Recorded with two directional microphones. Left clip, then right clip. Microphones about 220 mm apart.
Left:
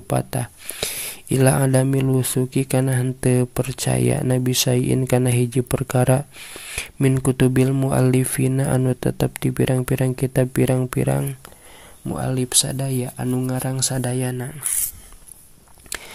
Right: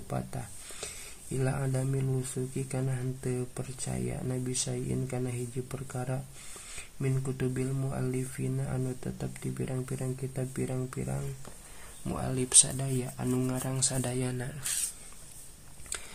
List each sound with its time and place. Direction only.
0.1 s speech: 40° left (ahead or behind)
12.1 s speech: 25° left (ahead or behind)
15.9 s walk: 30° left (ahead or behind)